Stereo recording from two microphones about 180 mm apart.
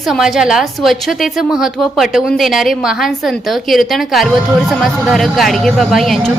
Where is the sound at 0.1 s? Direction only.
Centre (ahead or behind).